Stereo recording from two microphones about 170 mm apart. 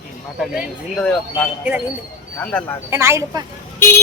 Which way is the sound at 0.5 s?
Centre (ahead or behind).